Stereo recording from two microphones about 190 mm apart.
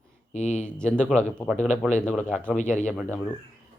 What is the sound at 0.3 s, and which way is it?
Speech, 35° left (ahead or behind).